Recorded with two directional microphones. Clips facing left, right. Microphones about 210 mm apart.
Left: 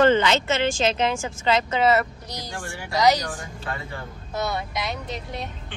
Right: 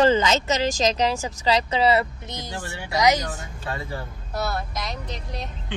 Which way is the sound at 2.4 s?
20° right (ahead or behind).